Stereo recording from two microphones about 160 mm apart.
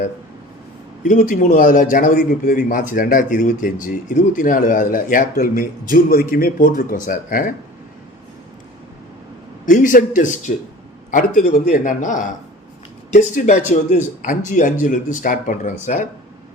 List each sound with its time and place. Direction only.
1.0 s a man's voice: 55° left (ahead or behind)
9.6 s a man's voice: 55° left (ahead or behind)